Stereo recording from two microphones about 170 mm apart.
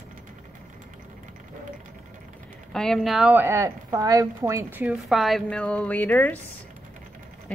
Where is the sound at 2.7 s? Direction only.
5° left (ahead or behind); by 4.6 s 20° right (ahead or behind).